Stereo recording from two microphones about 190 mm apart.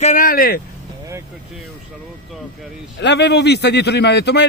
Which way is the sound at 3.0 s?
65° left (ahead or behind).